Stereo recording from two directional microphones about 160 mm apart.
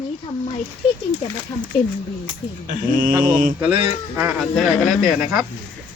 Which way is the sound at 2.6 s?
65° right (ahead or behind).